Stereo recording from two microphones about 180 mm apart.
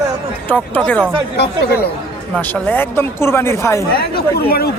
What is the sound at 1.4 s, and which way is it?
Speech, 65° left (ahead or behind).